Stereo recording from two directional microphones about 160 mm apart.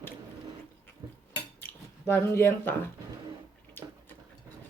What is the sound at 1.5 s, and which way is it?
Chewing, 15° left (ahead or behind).